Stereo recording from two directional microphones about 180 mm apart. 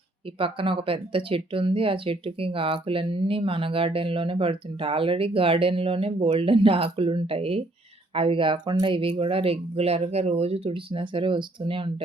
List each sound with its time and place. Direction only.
0.3 s speech: 30° right (ahead or behind)